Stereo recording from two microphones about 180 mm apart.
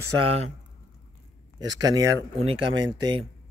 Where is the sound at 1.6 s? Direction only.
20° right (ahead or behind).